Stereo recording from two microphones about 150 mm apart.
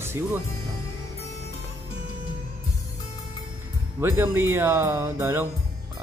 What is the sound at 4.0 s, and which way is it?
Speech, 15° right (ahead or behind).